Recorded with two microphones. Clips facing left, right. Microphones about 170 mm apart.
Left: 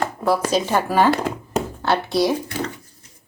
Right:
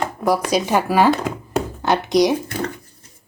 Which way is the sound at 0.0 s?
15° right (ahead or behind).